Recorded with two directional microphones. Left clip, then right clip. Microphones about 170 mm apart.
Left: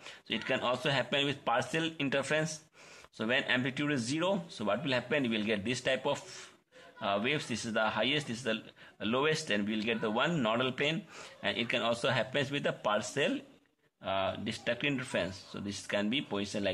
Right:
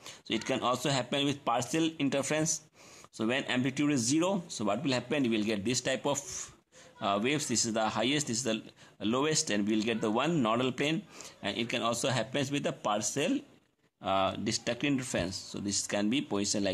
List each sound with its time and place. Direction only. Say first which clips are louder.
0.0 s speech: right 2 dB; 40° right (ahead or behind)